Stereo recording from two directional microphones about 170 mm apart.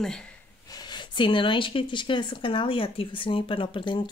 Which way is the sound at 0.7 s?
25° left (ahead or behind).